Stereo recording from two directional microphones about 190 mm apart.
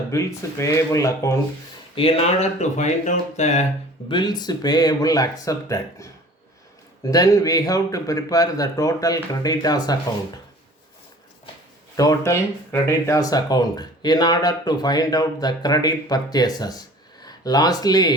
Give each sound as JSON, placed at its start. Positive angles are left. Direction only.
{"t": 0.1, "sound": "speech", "side_deg": 15}
{"t": 2.0, "sound": "speech", "side_deg": 30}
{"t": 4.1, "sound": "speech", "side_deg": 20}
{"t": 11.9, "sound": "speech", "side_deg": 15}